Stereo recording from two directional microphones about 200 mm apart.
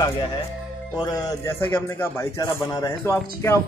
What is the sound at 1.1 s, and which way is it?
A man's voice, 15° left (ahead or behind).